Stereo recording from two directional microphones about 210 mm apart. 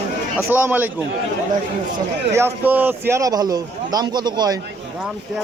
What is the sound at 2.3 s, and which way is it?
A man's voice, 10° right (ahead or behind).